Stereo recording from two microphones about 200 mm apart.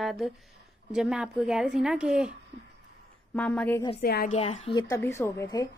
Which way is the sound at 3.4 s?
5° left (ahead or behind).